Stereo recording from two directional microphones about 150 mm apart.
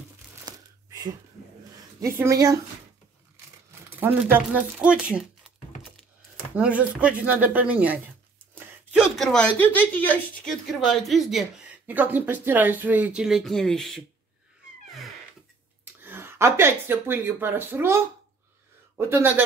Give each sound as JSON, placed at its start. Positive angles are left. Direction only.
{"t": 0.5, "sound": "a sound", "side_deg": -25}
{"t": 2.0, "sound": "speech", "side_deg": -20}
{"t": 3.9, "sound": "speech", "side_deg": -15}
{"t": 6.5, "sound": "speech", "side_deg": -10}
{"t": 9.2, "sound": "a woman's voice", "side_deg": 5}
{"t": 14.9, "sound": "a sound", "side_deg": 0}
{"t": 16.0, "sound": "speech", "side_deg": -15}